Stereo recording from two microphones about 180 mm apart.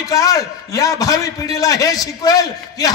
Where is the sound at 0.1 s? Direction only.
20° left (ahead or behind).